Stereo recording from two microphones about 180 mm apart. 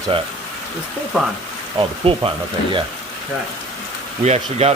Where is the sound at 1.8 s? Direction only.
30° right (ahead or behind).